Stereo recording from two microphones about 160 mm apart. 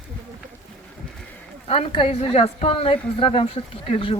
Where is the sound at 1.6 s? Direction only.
40° left (ahead or behind).